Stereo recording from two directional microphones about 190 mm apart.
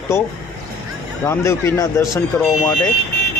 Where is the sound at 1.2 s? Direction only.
15° left (ahead or behind).